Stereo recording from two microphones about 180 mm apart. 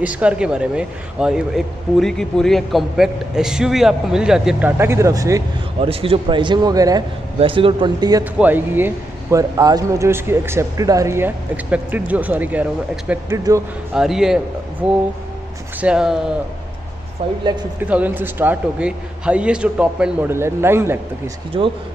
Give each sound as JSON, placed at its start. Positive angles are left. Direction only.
{"t": 0.0, "sound": "a man's voice", "side_deg": -5}
{"t": 5.8, "sound": "a man's voice", "side_deg": -30}
{"t": 8.2, "sound": "a man's voice", "side_deg": -10}
{"t": 17.7, "sound": "speech", "side_deg": -10}
{"t": 21.5, "sound": "a man's voice", "side_deg": -30}